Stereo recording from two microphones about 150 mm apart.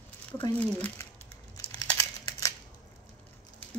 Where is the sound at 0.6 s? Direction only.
10° left (ahead or behind).